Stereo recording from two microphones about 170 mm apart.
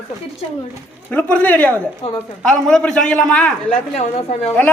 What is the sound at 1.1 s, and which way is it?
A man's voice, 10° left (ahead or behind).